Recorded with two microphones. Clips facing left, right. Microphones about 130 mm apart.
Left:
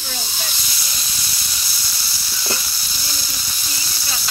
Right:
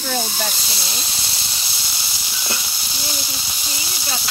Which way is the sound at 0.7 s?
25° right (ahead or behind).